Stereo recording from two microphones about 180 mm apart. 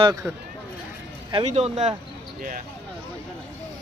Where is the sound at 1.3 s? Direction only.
35° right (ahead or behind).